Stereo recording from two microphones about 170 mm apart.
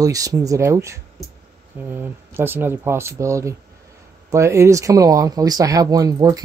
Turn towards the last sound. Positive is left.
turn(degrees=-20)  # may be behind; listen again after turning